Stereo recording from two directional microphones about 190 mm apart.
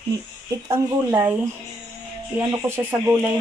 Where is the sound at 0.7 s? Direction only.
10° right (ahead or behind).